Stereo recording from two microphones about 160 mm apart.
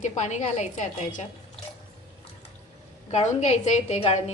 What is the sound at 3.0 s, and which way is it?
A woman's voice, 45° left (ahead or behind).